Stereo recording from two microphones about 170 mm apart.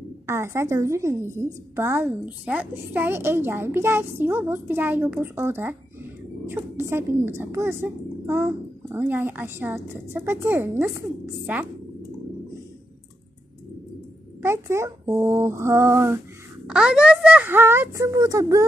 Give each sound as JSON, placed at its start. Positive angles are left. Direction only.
{"t": 0.3, "sound": "a woman's voice", "side_deg": -15}
{"t": 14.4, "sound": "a sound", "side_deg": -15}
{"t": 15.1, "sound": "a woman's voice", "side_deg": -15}
{"t": 16.6, "sound": "a woman's voice", "side_deg": -5}